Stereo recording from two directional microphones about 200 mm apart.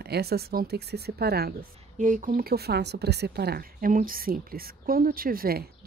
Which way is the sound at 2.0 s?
40° right (ahead or behind).